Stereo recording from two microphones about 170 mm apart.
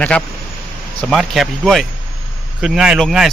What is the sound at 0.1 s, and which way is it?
A man's voice, 10° left (ahead or behind).